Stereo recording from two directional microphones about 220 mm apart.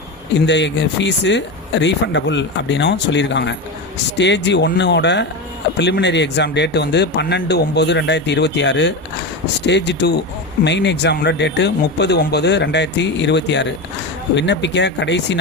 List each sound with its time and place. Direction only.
0.3 s speech: 55° left (ahead or behind)